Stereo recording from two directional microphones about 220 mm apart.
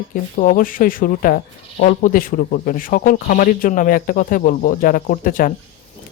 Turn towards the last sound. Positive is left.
turn(degrees=40)  # may be behind; listen again after turning